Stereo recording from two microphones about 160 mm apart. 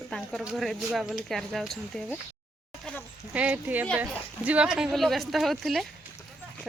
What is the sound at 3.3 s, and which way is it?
Speech, 10° right (ahead or behind).